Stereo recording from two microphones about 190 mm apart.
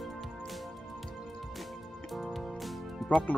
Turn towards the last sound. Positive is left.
turn(degrees=5)  # may be behind; listen again after turning